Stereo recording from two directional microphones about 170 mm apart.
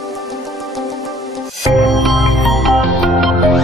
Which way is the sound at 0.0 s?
Centre (ahead or behind).